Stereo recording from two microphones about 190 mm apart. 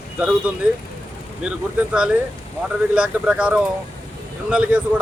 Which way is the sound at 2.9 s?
5° right (ahead or behind).